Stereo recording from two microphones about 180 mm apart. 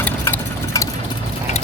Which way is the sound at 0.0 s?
15° left (ahead or behind).